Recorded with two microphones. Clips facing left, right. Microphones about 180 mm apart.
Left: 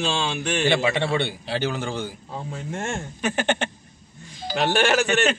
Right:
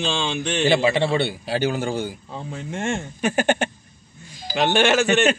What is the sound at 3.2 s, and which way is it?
Speech, 45° right (ahead or behind).